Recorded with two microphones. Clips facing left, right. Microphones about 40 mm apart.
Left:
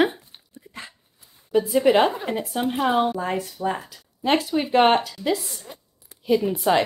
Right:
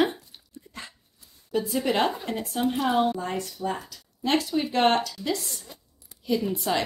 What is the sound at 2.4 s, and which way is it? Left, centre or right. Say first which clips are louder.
Speech: right 3 dB; centre.